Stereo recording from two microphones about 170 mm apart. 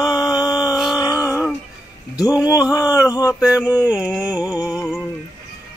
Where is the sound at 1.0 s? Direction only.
20° left (ahead or behind).